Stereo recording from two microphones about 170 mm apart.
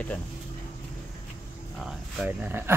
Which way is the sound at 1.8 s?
5° right (ahead or behind).